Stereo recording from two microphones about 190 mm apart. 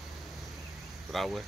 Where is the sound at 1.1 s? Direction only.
Centre (ahead or behind).